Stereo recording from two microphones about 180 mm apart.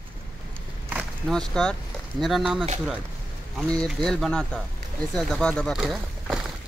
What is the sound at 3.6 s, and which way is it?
Speech, 5° left (ahead or behind).